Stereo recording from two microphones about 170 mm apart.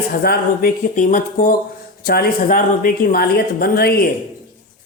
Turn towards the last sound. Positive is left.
turn(degrees=65)  # may be behind; listen again after turning